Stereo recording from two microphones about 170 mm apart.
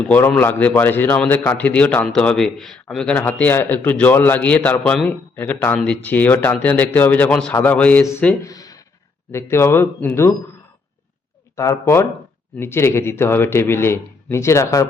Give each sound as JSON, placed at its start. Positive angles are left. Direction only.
{"t": 0.0, "sound": "a man's voice", "side_deg": 5}
{"t": 8.4, "sound": "a sound", "side_deg": 20}
{"t": 9.3, "sound": "a man's voice", "side_deg": 15}
{"t": 11.5, "sound": "a man's voice", "side_deg": 15}